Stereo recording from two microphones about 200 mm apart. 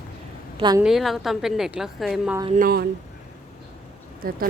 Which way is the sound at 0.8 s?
Centre (ahead or behind).